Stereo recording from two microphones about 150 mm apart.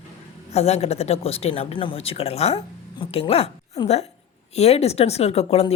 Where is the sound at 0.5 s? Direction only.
45° left (ahead or behind).